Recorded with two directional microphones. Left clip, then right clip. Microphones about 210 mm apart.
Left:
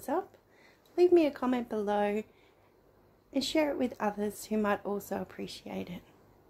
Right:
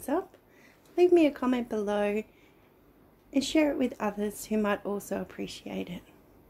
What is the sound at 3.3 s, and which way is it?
A woman's voice, 5° left (ahead or behind).